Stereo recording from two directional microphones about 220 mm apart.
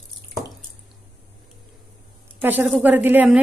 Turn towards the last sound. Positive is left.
turn(degrees=-5)  # may be behind; listen again after turning